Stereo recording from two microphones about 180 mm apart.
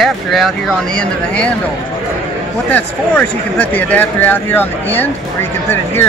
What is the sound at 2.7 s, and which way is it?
Speech, 10° left (ahead or behind).